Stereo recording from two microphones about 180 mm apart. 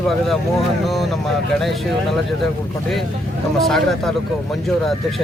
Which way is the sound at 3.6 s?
Centre (ahead or behind).